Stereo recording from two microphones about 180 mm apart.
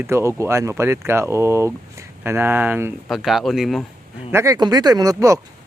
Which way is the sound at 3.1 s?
Centre (ahead or behind).